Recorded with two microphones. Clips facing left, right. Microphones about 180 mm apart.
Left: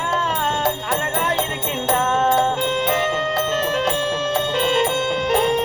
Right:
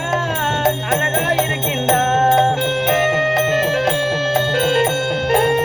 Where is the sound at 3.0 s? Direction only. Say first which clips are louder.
Right 4 dB; 10° right (ahead or behind).